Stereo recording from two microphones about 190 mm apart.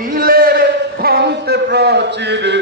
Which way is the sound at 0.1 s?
50° right (ahead or behind).